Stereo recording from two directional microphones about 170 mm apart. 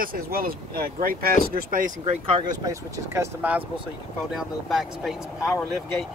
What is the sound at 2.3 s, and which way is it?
Speech, 25° right (ahead or behind).